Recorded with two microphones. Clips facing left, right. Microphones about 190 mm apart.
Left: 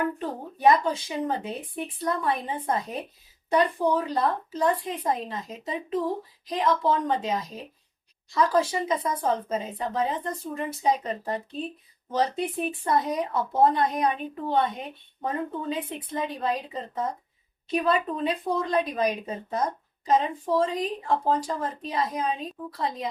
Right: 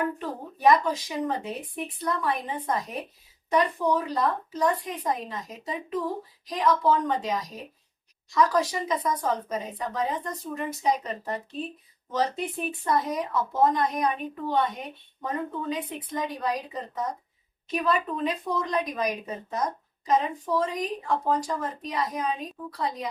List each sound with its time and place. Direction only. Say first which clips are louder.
0.2 s a woman's voice: left 1 dB; 30° left (ahead or behind)
12.1 s a woman's voice: left 2 dB; 30° left (ahead or behind)